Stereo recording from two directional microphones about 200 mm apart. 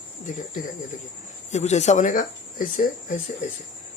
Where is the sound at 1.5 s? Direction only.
35° left (ahead or behind).